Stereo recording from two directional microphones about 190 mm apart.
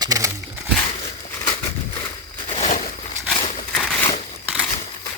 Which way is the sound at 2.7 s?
45° left (ahead or behind).